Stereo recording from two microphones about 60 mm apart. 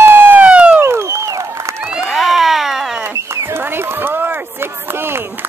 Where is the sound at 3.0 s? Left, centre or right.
Right.